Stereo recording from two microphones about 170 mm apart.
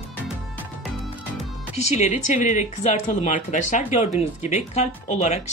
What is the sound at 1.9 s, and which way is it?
Speech, 45° left (ahead or behind).